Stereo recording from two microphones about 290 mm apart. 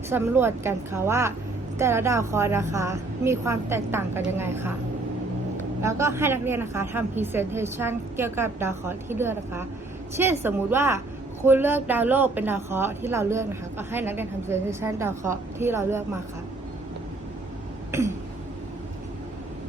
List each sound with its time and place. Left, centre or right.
0.1 s speech: centre
5.8 s speech: centre